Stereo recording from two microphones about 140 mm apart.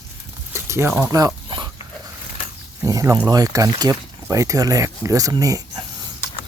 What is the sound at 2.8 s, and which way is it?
Speech, 25° right (ahead or behind).